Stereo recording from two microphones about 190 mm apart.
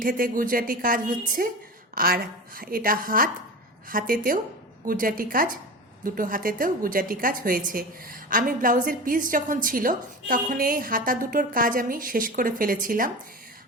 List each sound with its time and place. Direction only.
0.0 s a woman's voice: 45° right (ahead or behind)